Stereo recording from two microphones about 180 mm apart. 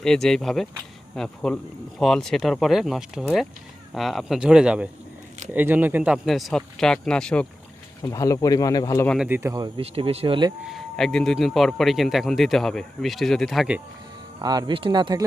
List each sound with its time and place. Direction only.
0.0 s speech: centre (ahead or behind)
8.0 s speech: 20° left (ahead or behind)
9.0 s speech: 5° right (ahead or behind)
9.4 s speech: 20° right (ahead or behind)
9.8 s speech: 35° right (ahead or behind)
10.7 s speech: centre (ahead or behind)
14.4 s speech: 25° right (ahead or behind)